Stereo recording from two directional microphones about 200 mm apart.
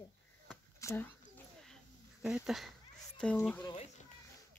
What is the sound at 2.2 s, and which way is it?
Speech, 5° right (ahead or behind).